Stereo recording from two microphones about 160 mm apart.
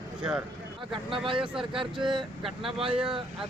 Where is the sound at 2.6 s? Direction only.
35° right (ahead or behind).